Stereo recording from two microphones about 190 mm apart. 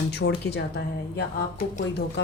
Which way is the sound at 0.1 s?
60° left (ahead or behind).